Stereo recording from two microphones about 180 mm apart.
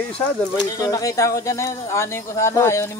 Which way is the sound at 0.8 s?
20° left (ahead or behind).